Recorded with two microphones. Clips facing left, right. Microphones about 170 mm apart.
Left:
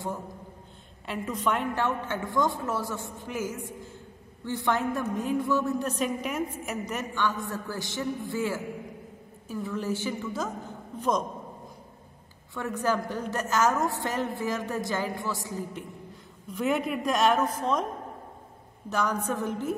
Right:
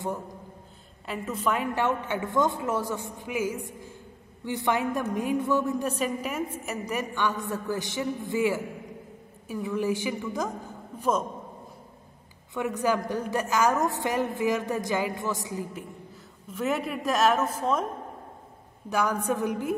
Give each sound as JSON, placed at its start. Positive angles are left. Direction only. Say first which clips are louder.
{"t": 1.0, "sound": "a woman's voice", "louder": "even", "side_deg": -5}
{"t": 12.5, "sound": "a woman's voice", "louder": "right 2 dB", "side_deg": -15}
{"t": 16.4, "sound": "a woman's voice", "louder": "left 1 dB", "side_deg": 0}
{"t": 18.9, "sound": "a woman's voice", "louder": "right 2 dB", "side_deg": -10}